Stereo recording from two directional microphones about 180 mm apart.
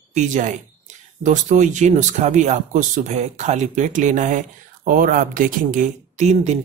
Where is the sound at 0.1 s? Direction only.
40° right (ahead or behind).